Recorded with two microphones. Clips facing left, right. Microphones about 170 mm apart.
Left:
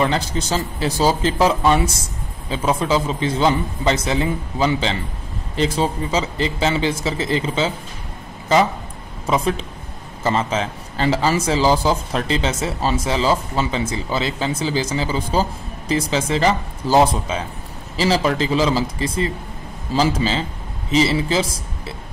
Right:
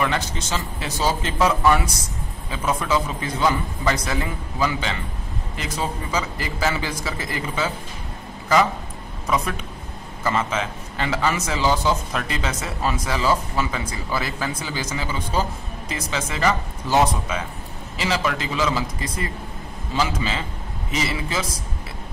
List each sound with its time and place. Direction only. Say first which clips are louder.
0.0 s a man's voice: left 4 dB; 35° left (ahead or behind)
9.3 s a man's voice: left 4 dB; 25° left (ahead or behind)